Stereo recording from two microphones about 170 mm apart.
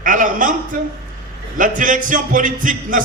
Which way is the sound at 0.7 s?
55° right (ahead or behind).